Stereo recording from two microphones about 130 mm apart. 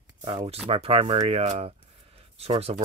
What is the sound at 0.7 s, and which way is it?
A man's voice, 45° right (ahead or behind).